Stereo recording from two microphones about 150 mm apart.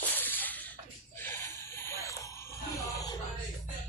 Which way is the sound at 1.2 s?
15° left (ahead or behind).